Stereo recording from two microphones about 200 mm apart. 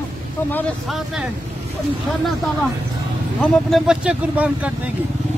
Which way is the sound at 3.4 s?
Centre (ahead or behind).